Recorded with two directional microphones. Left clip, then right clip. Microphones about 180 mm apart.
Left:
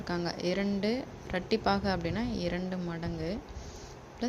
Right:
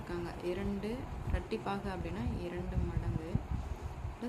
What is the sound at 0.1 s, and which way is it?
Speech, 40° left (ahead or behind).